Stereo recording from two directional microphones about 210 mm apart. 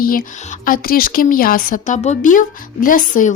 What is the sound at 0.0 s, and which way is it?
A woman's voice, 40° left (ahead or behind).